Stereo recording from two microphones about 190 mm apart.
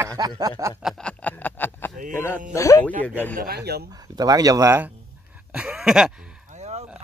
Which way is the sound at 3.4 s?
55° right (ahead or behind).